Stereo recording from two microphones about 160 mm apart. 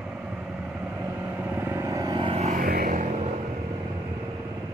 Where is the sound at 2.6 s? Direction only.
70° right (ahead or behind).